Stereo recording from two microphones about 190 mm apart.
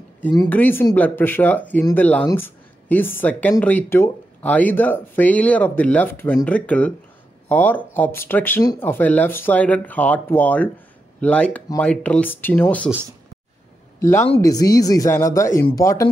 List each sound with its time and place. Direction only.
0.5 s speech: 10° left (ahead or behind)
13.9 s speech: 15° left (ahead or behind)